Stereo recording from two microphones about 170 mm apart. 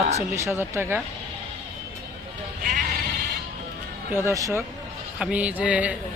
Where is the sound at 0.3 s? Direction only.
15° right (ahead or behind).